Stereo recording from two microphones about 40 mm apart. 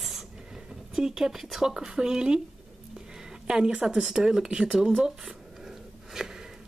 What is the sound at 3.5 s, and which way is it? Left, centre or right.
Speech, centre.